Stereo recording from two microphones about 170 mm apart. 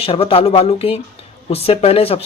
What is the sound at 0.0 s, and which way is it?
Speech, 35° left (ahead or behind).